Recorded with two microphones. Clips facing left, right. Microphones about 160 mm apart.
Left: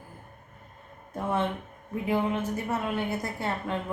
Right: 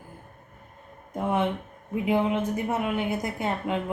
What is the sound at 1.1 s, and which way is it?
A woman's voice, 20° right (ahead or behind).